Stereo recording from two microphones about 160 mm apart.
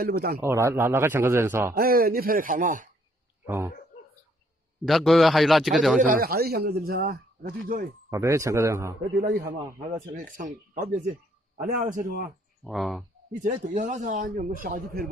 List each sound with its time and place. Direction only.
0.0 s a man's voice: 70° right (ahead or behind)
0.4 s a man's voice: 15° right (ahead or behind)
1.7 s speech: 65° right (ahead or behind)
3.4 s speech: 15° right (ahead or behind)
4.8 s a man's voice: centre (ahead or behind)
5.9 s a man's voice: 55° right (ahead or behind)
8.1 s a man's voice: 20° right (ahead or behind)
9.1 s a man's voice: 70° right (ahead or behind)
12.6 s a man's voice: centre (ahead or behind)
13.4 s a man's voice: 50° right (ahead or behind)